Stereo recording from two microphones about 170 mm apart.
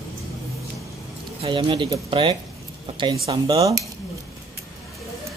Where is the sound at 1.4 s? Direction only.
30° right (ahead or behind).